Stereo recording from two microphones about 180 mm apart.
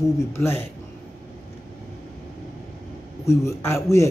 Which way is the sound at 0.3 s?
15° left (ahead or behind).